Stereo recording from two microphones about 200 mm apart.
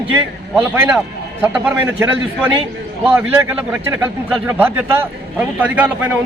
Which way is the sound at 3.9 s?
10° right (ahead or behind).